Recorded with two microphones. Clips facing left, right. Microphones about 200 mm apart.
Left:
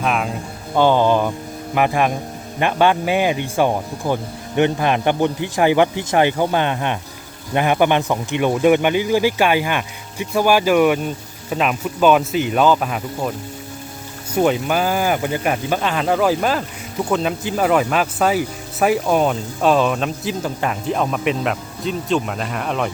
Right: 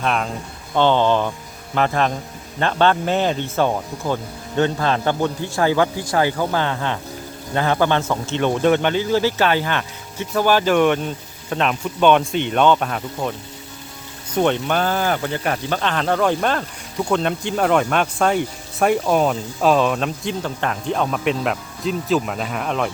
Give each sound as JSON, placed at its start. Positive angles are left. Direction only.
{"t": 0.0, "sound": "speech", "side_deg": 5}
{"t": 14.3, "sound": "speech", "side_deg": 5}